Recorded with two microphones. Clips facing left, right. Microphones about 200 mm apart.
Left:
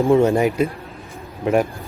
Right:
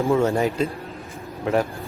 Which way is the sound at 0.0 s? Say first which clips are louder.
Left 5 dB; 15° left (ahead or behind).